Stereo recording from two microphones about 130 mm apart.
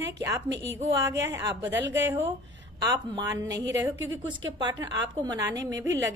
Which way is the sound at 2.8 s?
30° right (ahead or behind).